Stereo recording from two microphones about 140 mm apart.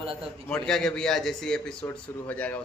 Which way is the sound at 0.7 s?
5° left (ahead or behind).